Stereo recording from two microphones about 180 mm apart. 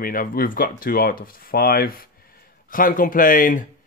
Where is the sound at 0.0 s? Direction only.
50° left (ahead or behind).